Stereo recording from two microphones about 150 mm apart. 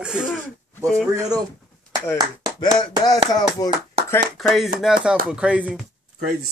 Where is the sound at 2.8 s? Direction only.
25° left (ahead or behind).